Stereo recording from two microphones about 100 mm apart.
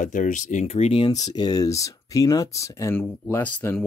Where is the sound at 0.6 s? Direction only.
90° left.